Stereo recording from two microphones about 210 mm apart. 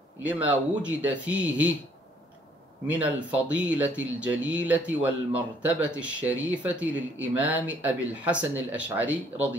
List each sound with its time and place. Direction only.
0.2 s speech: 5° right (ahead or behind)
2.9 s speech: 5° right (ahead or behind)